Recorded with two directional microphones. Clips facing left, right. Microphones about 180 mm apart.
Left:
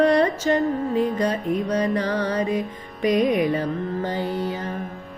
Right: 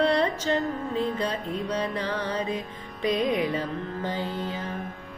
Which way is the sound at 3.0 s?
15° left (ahead or behind).